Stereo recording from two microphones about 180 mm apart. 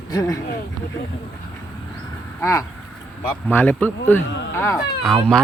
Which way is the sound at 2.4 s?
15° left (ahead or behind).